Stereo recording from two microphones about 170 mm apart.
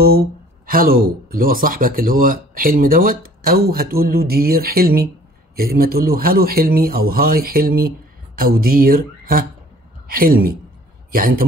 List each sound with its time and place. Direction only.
0.7 s a woman's voice: 60° right (ahead or behind)